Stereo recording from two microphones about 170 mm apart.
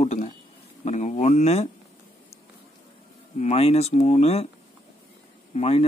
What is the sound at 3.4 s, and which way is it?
Speech, 40° left (ahead or behind).